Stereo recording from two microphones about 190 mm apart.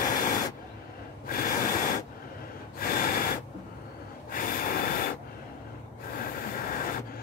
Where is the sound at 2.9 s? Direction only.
50° left (ahead or behind).